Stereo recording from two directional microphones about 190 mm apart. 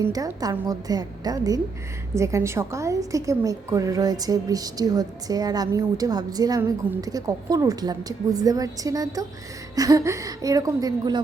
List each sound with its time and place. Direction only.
0.0 s a woman's voice: 20° right (ahead or behind)